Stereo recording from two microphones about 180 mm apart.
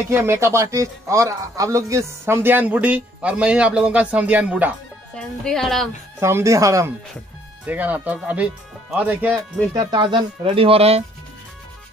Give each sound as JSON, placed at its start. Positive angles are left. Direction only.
{"t": 0.1, "sound": "speech", "side_deg": -15}
{"t": 5.1, "sound": "a woman's voice", "side_deg": 5}
{"t": 6.1, "sound": "speech", "side_deg": -15}
{"t": 9.8, "sound": "speech", "side_deg": -25}